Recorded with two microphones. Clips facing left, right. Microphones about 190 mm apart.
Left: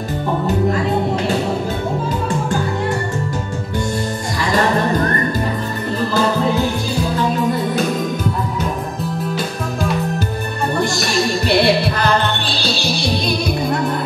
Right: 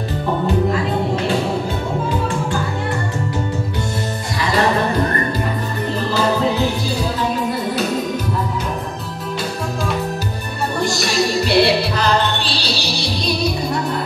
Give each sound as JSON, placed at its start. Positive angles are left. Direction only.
{"t": 10.8, "sound": "music", "side_deg": 50}